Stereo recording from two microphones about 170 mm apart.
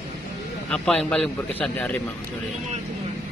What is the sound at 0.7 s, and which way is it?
Speech, 5° left (ahead or behind).